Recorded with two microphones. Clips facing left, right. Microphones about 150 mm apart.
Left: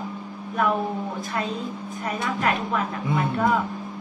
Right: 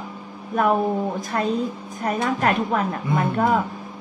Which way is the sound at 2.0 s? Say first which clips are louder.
Right 4 dB; 45° right (ahead or behind).